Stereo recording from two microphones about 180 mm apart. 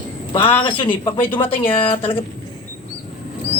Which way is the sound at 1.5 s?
10° left (ahead or behind).